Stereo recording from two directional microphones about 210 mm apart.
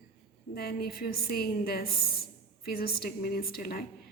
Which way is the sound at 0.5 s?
45° left (ahead or behind).